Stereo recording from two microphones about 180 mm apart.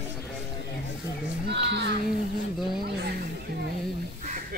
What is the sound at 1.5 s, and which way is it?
Speech, 75° right (ahead or behind).